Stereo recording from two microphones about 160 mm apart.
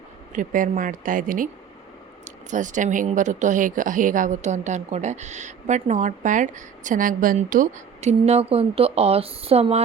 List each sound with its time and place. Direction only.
0.3 s speech: 55° right (ahead or behind); by 9.8 s 40° right (ahead or behind)